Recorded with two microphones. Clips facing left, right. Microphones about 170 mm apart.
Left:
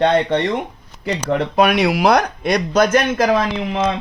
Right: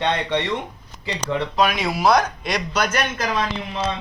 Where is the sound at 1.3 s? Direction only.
60° left (ahead or behind).